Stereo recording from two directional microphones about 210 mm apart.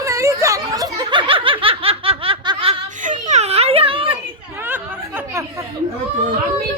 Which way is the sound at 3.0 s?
35° right (ahead or behind).